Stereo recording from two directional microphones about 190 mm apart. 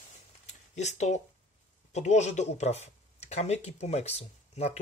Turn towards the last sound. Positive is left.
turn(degrees=35)  # may be behind; listen again after turning